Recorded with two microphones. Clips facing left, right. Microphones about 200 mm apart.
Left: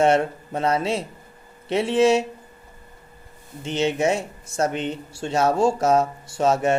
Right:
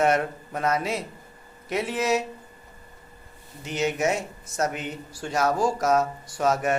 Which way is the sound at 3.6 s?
30° left (ahead or behind).